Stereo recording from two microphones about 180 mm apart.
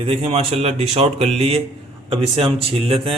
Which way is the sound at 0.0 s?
35° right (ahead or behind).